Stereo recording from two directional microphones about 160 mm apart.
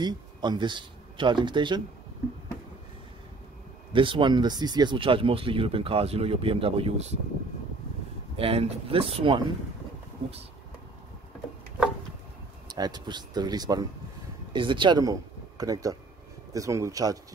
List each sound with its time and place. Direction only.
0.0 s speech: 25° right (ahead or behind)
3.9 s speech: 30° right (ahead or behind)
8.4 s speech: 35° right (ahead or behind)
12.6 s speech: 25° right (ahead or behind)